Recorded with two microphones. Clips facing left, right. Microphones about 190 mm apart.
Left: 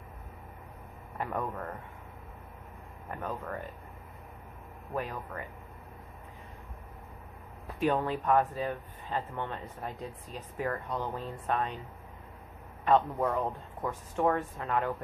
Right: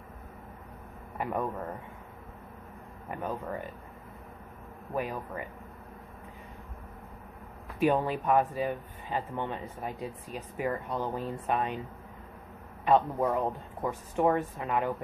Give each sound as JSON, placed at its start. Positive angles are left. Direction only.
{"t": 1.1, "sound": "speech", "side_deg": -10}
{"t": 3.1, "sound": "speech", "side_deg": -15}
{"t": 7.8, "sound": "speech", "side_deg": -10}
{"t": 12.8, "sound": "speech", "side_deg": -10}